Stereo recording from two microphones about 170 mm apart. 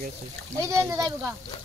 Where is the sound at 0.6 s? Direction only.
15° right (ahead or behind).